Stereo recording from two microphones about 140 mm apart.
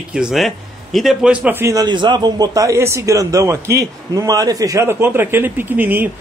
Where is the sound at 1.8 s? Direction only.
30° right (ahead or behind).